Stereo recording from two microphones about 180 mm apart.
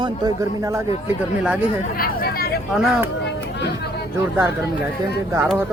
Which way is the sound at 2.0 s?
55° left (ahead or behind).